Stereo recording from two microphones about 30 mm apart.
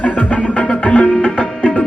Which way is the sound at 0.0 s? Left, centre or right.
Left.